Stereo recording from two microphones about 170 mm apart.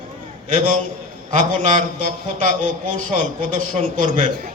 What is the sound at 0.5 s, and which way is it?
A man's voice, 50° right (ahead or behind).